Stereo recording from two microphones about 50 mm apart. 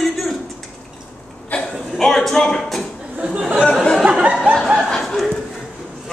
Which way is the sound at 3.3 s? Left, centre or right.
Centre.